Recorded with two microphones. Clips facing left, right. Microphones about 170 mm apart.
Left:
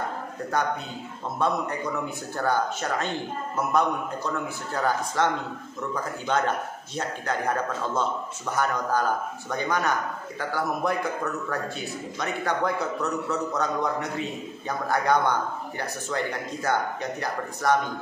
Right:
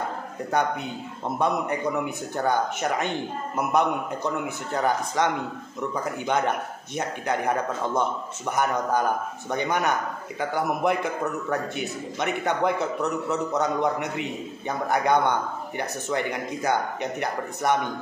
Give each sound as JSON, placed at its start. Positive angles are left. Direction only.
{"t": 1.4, "sound": "a man's voice", "side_deg": -15}